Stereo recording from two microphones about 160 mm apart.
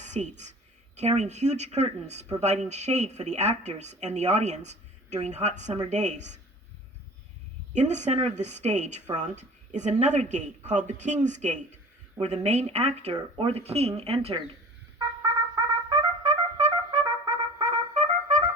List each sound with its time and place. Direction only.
0.0 s a woman's voice: 45° right (ahead or behind)
7.7 s a woman's voice: 45° right (ahead or behind)
15.9 s trumpet: 40° right (ahead or behind)